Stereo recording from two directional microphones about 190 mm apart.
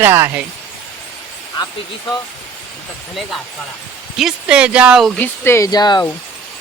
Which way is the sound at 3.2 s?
Centre (ahead or behind).